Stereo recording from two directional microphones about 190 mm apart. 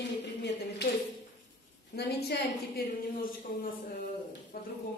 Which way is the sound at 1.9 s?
60° left (ahead or behind).